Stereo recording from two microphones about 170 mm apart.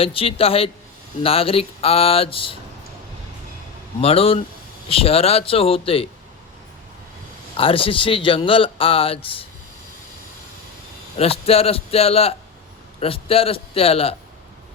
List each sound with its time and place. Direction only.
0.0 s a man's voice: 35° left (ahead or behind)
4.0 s a man's voice: 35° left (ahead or behind)
7.5 s a man's voice: 30° left (ahead or behind)
11.2 s a man's voice: 35° left (ahead or behind)